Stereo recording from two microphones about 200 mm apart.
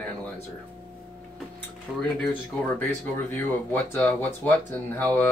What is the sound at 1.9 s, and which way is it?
Speech, centre (ahead or behind).